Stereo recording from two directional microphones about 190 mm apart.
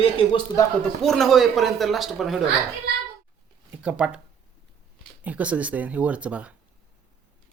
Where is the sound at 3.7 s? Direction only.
5° right (ahead or behind).